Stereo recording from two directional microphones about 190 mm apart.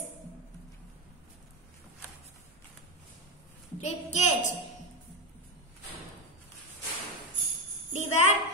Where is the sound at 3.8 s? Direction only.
40° left (ahead or behind).